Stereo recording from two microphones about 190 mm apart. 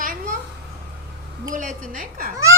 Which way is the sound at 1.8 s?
45° right (ahead or behind).